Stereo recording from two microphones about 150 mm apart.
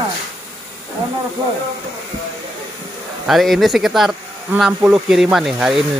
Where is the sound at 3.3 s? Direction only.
Centre (ahead or behind).